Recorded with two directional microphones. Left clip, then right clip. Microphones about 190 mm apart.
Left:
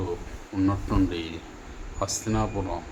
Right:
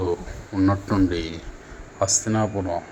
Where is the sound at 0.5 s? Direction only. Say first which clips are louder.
Right 4 dB; 25° right (ahead or behind).